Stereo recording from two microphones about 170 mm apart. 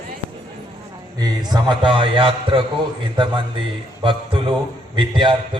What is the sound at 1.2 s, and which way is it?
A man's voice, 25° right (ahead or behind).